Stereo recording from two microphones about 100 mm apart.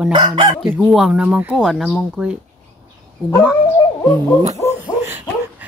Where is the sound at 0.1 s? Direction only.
50° right (ahead or behind).